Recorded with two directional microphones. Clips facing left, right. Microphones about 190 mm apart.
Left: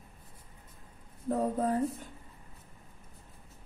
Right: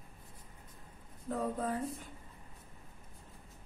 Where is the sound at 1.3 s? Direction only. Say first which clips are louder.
Left 6 dB; 40° left (ahead or behind).